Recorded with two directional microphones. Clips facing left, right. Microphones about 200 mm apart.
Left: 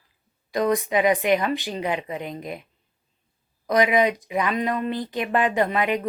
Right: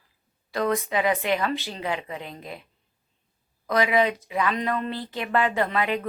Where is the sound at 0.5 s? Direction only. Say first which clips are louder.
Left 3 dB; 15° left (ahead or behind).